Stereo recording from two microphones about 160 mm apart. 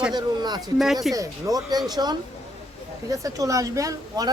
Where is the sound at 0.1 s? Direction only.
25° right (ahead or behind).